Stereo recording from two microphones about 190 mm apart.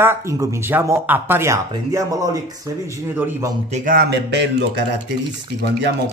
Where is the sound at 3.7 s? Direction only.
50° right (ahead or behind); by 5.0 s 65° right (ahead or behind).